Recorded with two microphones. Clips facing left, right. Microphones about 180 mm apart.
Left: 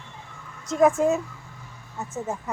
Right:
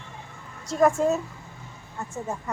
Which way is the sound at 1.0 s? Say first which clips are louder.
Left 1 dB; 10° left (ahead or behind).